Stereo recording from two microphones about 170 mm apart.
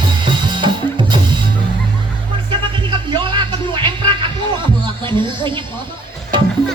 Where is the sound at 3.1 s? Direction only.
30° right (ahead or behind).